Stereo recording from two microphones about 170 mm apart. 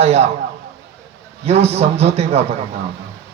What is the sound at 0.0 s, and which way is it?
Speech, 40° right (ahead or behind).